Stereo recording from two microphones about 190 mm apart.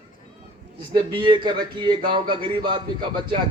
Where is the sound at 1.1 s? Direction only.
25° right (ahead or behind).